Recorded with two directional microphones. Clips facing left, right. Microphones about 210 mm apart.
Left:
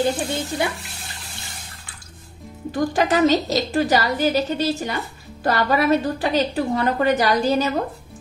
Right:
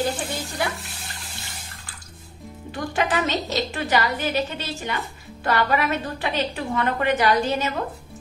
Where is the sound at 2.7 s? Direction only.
40° left (ahead or behind).